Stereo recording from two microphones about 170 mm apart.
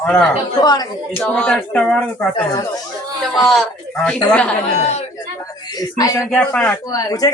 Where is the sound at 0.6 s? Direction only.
25° left (ahead or behind).